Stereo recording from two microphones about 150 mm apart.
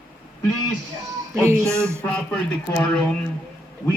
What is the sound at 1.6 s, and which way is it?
Speech, 5° left (ahead or behind).